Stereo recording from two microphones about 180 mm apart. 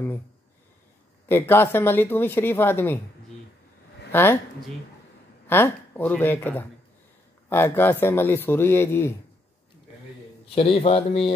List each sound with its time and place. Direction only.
1.3 s speech: 10° left (ahead or behind)
4.1 s speech: 10° left (ahead or behind)
5.5 s speech: 10° left (ahead or behind)
10.5 s speech: 35° left (ahead or behind)